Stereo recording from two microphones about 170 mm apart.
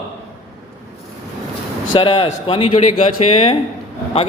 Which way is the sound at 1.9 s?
30° left (ahead or behind).